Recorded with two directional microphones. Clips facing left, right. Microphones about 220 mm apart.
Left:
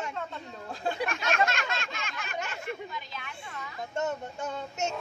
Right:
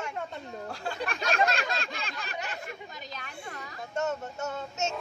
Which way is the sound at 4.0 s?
15° left (ahead or behind).